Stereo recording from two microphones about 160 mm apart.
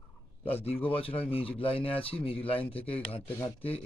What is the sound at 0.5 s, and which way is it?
Speech, 35° left (ahead or behind).